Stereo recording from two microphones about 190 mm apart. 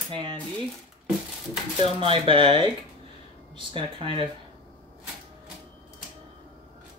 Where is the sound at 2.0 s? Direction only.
30° right (ahead or behind).